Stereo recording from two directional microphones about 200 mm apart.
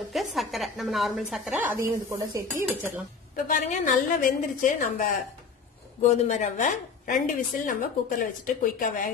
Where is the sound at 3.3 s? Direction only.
40° left (ahead or behind).